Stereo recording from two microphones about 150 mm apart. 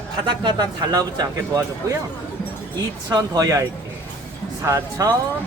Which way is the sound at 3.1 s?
25° right (ahead or behind).